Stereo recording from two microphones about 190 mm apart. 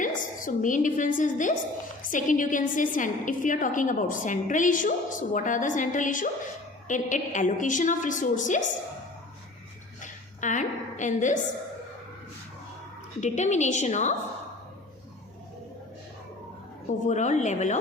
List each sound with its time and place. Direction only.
0.0 s a woman's voice: 45° left (ahead or behind)
10.0 s a sound: 40° left (ahead or behind)
13.1 s a woman's voice: 40° left (ahead or behind)
17.1 s a woman's voice: 40° left (ahead or behind)